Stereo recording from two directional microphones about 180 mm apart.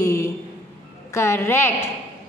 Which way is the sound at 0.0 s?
15° left (ahead or behind).